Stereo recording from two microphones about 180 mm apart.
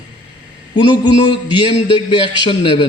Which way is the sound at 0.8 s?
25° left (ahead or behind).